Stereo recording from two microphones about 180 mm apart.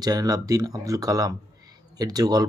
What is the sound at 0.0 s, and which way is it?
Speech, 20° right (ahead or behind).